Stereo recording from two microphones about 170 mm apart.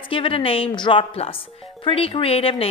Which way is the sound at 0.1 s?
30° left (ahead or behind).